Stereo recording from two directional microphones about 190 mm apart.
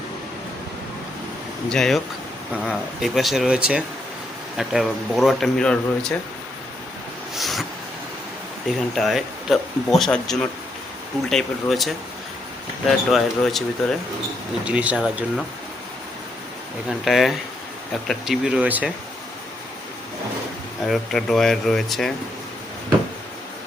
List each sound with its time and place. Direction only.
1.7 s speech: centre (ahead or behind)
7.3 s a sound: centre (ahead or behind)
9.0 s speech: centre (ahead or behind)
17.1 s speech: centre (ahead or behind)
20.8 s speech: centre (ahead or behind)